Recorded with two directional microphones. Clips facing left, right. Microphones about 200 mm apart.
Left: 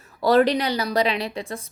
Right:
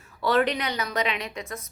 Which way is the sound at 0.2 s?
40° left (ahead or behind).